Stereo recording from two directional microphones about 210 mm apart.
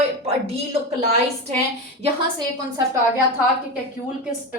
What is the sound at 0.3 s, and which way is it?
Speech, 30° right (ahead or behind).